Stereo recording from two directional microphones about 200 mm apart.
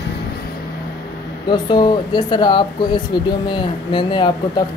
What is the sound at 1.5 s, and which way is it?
Speech, 20° left (ahead or behind).